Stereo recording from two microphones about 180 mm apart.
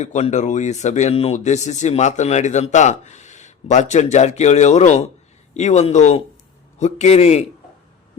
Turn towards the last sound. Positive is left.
turn(degrees=35)  # may be behind; listen again after turning